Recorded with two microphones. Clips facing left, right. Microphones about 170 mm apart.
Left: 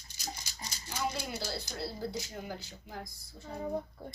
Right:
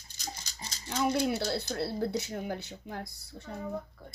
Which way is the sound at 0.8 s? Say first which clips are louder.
Right 8 dB; 60° right (ahead or behind).